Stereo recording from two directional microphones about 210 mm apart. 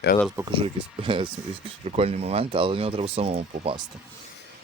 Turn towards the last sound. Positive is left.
turn(degrees=-25)  # may be behind; listen again after turning